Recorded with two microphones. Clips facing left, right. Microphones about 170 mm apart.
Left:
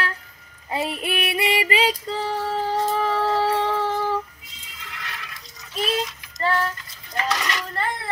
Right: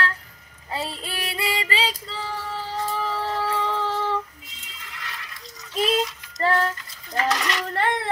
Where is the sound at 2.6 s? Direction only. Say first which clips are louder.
Left 5 dB; 65° left (ahead or behind).